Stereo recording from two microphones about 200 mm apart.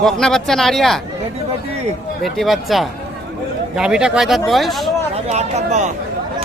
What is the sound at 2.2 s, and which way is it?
Speech, centre (ahead or behind).